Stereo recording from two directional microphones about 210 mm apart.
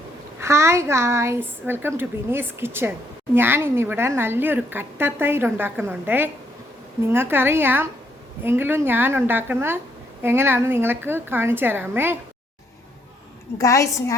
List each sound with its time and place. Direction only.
0.3 s a woman's voice: 15° right (ahead or behind)
13.6 s a woman's voice: 15° left (ahead or behind)